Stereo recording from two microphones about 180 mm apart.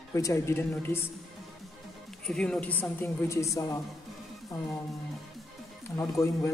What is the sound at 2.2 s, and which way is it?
A woman's voice, 5° left (ahead or behind).